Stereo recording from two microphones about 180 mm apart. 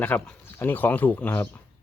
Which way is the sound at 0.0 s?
10° left (ahead or behind).